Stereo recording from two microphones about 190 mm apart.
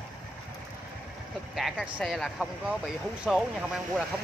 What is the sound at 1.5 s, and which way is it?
Speech, centre (ahead or behind).